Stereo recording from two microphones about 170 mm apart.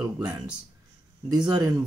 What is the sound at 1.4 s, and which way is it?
Speech, 20° right (ahead or behind).